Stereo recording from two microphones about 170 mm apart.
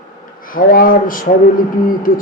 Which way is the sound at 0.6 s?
55° left (ahead or behind).